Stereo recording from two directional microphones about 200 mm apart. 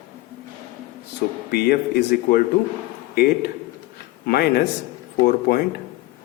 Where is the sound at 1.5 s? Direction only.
50° left (ahead or behind).